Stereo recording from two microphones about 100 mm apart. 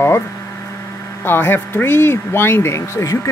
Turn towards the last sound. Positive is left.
turn(degrees=30)  # may be behind; listen again after turning